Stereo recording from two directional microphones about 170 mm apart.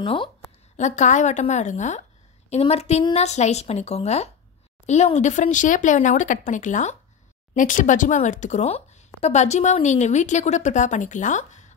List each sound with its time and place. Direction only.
0.0 s a woman's voice: 30° left (ahead or behind)
0.7 s a woman's voice: 45° left (ahead or behind)